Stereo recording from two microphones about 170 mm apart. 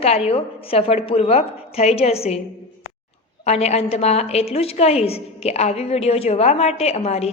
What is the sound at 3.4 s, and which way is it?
A woman's voice, 40° left (ahead or behind).